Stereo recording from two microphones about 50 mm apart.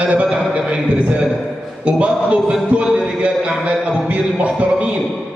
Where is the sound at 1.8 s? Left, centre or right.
Right.